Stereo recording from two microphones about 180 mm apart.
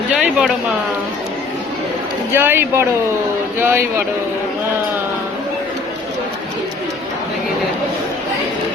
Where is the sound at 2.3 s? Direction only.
10° right (ahead or behind).